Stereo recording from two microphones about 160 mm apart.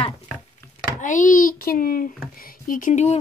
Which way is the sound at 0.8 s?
55° left (ahead or behind).